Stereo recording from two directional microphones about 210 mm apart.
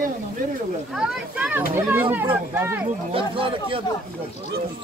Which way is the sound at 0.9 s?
5° right (ahead or behind).